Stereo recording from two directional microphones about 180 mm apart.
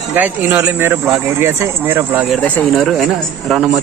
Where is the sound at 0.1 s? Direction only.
10° right (ahead or behind).